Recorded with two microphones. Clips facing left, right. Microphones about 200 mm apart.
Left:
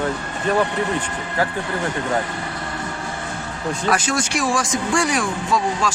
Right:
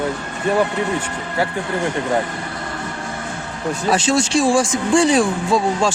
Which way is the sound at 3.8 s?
25° right (ahead or behind).